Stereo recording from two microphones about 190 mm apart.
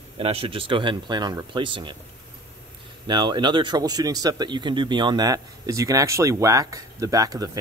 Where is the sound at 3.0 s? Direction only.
25° right (ahead or behind).